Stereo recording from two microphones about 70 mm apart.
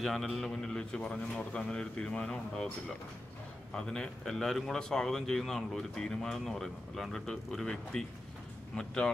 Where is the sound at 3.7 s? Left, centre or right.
Centre.